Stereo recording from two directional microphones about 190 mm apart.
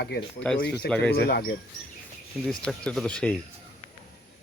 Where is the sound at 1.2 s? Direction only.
55° left (ahead or behind).